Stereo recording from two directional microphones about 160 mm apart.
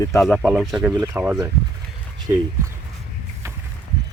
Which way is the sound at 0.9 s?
20° right (ahead or behind).